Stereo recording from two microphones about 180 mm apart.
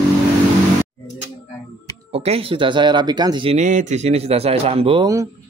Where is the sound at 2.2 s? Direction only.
30° right (ahead or behind).